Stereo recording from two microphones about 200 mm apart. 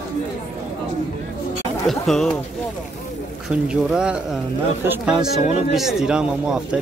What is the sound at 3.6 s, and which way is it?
Speech, 5° right (ahead or behind).